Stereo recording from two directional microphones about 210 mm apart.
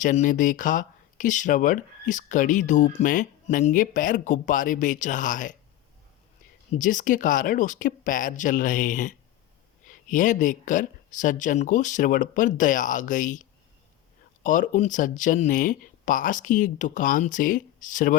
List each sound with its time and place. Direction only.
0.0 s speech: 35° left (ahead or behind)
6.7 s speech: 40° left (ahead or behind)